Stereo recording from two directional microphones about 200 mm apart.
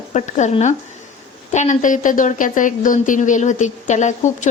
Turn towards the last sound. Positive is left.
turn(degrees=35)  # may be behind; listen again after turning